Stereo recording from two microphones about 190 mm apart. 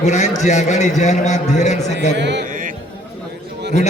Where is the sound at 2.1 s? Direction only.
65° right (ahead or behind).